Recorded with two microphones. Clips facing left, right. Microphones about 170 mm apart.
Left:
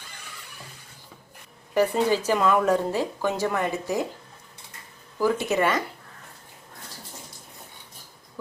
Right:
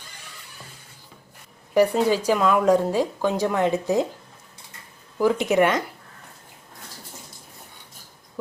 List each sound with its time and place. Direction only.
1.7 s speech: 10° right (ahead or behind)
5.1 s speech: 15° right (ahead or behind)